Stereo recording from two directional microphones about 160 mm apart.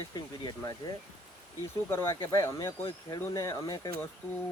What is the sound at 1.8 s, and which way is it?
Speech, 15° left (ahead or behind).